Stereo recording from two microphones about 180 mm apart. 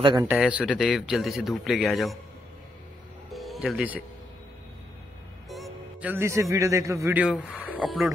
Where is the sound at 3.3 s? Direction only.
Centre (ahead or behind).